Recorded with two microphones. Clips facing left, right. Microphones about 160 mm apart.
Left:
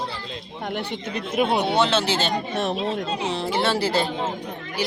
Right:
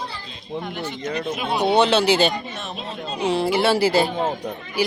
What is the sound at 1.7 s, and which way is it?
Speech, 15° right (ahead or behind).